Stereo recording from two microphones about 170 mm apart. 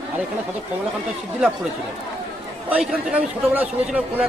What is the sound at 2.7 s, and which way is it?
A man's voice, 10° right (ahead or behind).